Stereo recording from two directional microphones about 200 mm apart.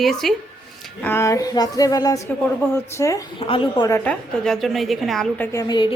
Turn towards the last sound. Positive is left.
turn(degrees=20)  # may be behind; listen again after turning